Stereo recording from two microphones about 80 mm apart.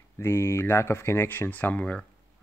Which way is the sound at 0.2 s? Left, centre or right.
Left.